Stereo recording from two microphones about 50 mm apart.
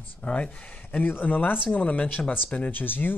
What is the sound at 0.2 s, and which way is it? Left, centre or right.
Speech, left.